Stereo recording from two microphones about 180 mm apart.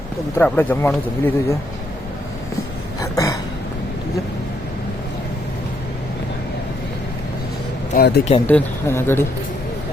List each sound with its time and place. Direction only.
0.3 s speech: 10° left (ahead or behind)
3.0 s a sound: 20° left (ahead or behind)
7.9 s speech: 65° left (ahead or behind)
8.4 s speech: 10° left (ahead or behind)